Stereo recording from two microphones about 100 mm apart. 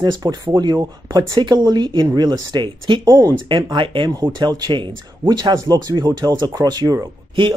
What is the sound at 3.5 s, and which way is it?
Speech, 55° right (ahead or behind).